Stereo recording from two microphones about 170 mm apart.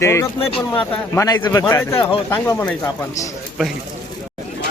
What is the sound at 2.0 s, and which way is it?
Speech, 30° left (ahead or behind).